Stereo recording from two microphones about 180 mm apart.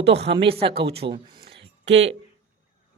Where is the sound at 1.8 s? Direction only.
90° right.